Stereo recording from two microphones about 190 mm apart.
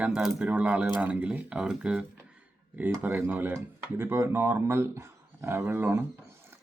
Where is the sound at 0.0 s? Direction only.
5° right (ahead or behind).